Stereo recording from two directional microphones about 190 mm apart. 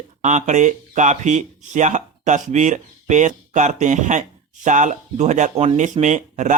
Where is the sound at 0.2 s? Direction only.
40° right (ahead or behind).